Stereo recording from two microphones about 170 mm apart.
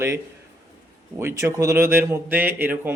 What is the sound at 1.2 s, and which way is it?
A man's voice, 15° right (ahead or behind).